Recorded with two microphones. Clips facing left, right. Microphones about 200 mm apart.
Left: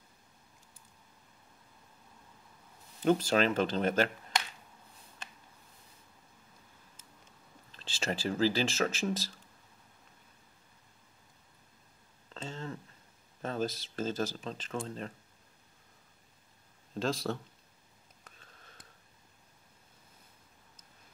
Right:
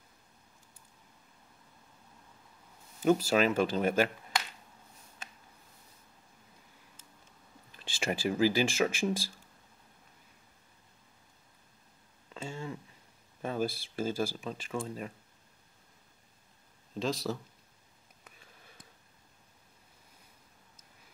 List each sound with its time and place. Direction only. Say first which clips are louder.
3.0 s speech: right 1 dB; 5° right (ahead or behind)
7.7 s speech: right 2 dB; 10° right (ahead or behind)
12.3 s a sound: right 1 dB; 10° right (ahead or behind)
13.4 s speech: right 1 dB; 10° right (ahead or behind)
17.0 s speech: even; centre (ahead or behind)
18.2 s a sound: right 1 dB; 10° right (ahead or behind)